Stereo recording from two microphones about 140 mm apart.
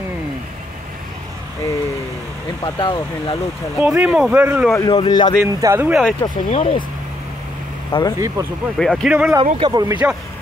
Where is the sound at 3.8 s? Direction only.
10° right (ahead or behind).